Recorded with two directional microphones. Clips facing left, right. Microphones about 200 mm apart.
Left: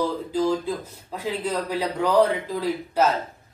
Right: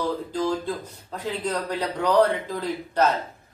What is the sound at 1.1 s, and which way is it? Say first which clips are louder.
A man's voice: left 1 dB; 10° left (ahead or behind).